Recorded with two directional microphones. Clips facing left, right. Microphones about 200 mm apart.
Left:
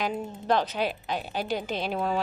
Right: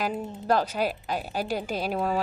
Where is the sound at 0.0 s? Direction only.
5° right (ahead or behind).